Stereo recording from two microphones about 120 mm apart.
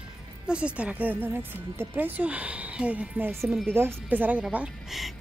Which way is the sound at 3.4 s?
Centre (ahead or behind).